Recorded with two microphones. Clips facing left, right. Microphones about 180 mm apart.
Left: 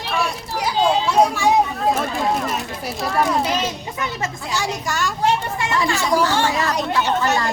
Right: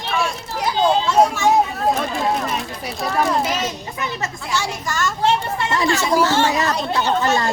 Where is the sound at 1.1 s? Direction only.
15° left (ahead or behind).